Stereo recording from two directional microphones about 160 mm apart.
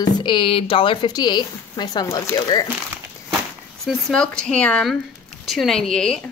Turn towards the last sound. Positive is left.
turn(degrees=5)  # may be behind; listen again after turning